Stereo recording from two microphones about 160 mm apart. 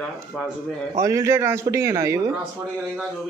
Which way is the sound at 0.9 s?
20° right (ahead or behind).